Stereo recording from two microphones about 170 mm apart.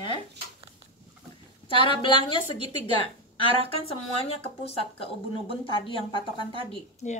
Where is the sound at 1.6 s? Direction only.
30° left (ahead or behind).